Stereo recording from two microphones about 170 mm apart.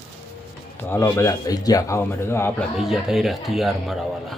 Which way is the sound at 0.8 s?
15° left (ahead or behind).